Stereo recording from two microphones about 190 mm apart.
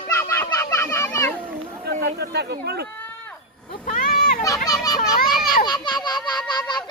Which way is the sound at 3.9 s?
50° left (ahead or behind).